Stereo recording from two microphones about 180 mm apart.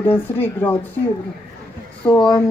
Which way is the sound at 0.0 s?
10° left (ahead or behind).